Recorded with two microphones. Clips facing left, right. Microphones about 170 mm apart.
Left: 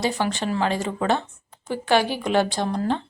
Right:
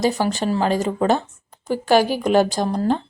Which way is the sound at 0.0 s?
40° right (ahead or behind).